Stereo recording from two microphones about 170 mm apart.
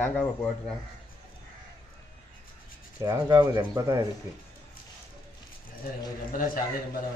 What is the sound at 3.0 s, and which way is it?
Speech, 20° right (ahead or behind).